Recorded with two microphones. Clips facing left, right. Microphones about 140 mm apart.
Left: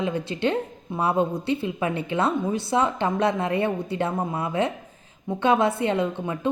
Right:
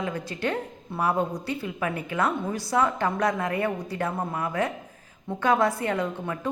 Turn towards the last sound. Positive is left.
turn(degrees=20)  # may be behind; listen again after turning